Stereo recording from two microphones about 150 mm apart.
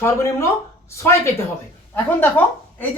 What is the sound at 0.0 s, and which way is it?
A woman's voice, 20° left (ahead or behind).